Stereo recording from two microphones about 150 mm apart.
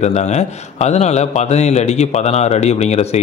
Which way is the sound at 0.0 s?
50° left (ahead or behind).